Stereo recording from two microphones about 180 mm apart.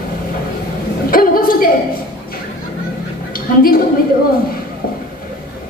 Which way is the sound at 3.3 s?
55° left (ahead or behind).